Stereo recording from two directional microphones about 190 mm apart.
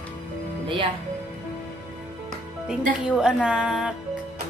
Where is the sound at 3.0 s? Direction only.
5° right (ahead or behind).